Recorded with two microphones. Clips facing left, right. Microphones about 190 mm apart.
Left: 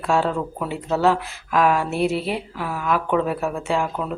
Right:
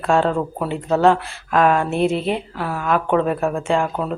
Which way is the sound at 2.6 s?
50° right (ahead or behind).